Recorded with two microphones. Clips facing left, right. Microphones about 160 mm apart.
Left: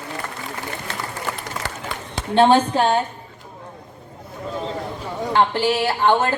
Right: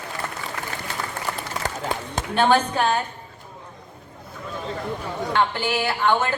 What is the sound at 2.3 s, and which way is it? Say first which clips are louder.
Speech: left 5 dB; 30° left (ahead or behind).